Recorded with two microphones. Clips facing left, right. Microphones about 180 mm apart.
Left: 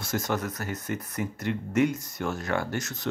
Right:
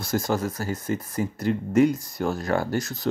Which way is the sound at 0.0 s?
35° right (ahead or behind).